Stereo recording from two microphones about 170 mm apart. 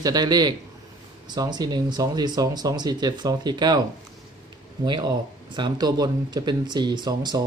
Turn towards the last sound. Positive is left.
turn(degrees=-25)  # may be behind; listen again after turning